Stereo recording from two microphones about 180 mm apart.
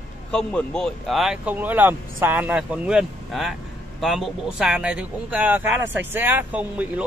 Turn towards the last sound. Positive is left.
turn(degrees=-10)  # may be behind; listen again after turning